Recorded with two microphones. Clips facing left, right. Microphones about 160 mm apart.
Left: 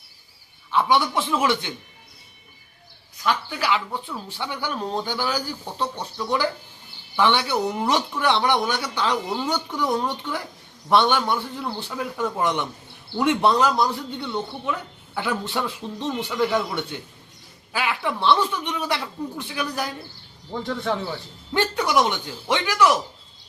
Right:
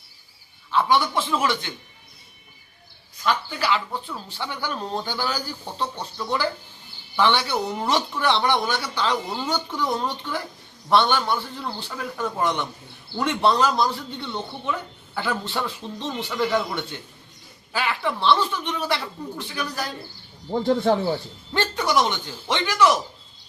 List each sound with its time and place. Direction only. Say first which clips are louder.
0.7 s a man's voice: even; 15° left (ahead or behind)
3.2 s speech: even; 10° left (ahead or behind)
7.5 s speech: left 2 dB; centre (ahead or behind)
7.9 s speech: right 1 dB; 10° left (ahead or behind)
9.3 s speech: left 2 dB; centre (ahead or behind)
10.1 s speech: left 1 dB; 10° left (ahead or behind)
20.5 s speech: right 6 dB; 30° right (ahead or behind)
21.5 s speech: left 1 dB; 10° left (ahead or behind)